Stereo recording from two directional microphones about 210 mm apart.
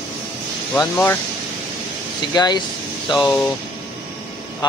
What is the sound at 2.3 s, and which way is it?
Speech, 20° left (ahead or behind).